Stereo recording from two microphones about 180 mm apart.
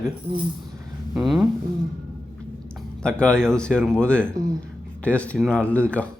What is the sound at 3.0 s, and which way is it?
Speech, 5° left (ahead or behind).